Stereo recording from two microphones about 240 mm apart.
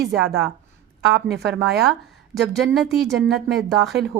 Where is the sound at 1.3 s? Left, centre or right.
Right.